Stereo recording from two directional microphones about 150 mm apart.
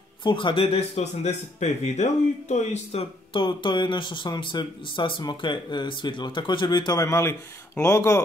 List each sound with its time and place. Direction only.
0.2 s speech: 30° left (ahead or behind)